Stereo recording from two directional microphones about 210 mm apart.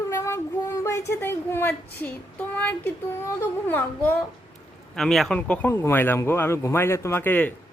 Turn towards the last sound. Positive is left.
turn(degrees=10)  # may be behind; listen again after turning